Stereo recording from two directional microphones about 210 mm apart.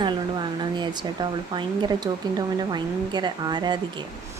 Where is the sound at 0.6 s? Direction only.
20° right (ahead or behind).